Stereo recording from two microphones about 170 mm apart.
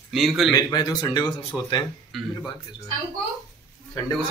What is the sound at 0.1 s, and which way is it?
Speech, centre (ahead or behind).